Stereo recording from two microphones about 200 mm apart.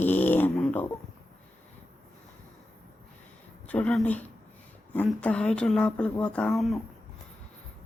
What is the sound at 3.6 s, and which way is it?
Speech, 5° left (ahead or behind).